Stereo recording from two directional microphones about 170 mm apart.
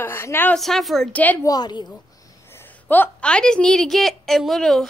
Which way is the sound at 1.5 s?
25° left (ahead or behind).